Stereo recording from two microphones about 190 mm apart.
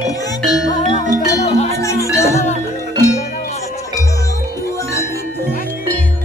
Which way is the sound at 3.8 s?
15° left (ahead or behind).